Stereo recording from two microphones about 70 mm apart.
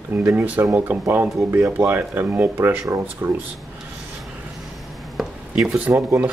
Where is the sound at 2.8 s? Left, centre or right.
Right.